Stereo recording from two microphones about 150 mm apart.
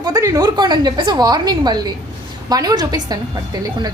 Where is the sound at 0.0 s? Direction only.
25° right (ahead or behind).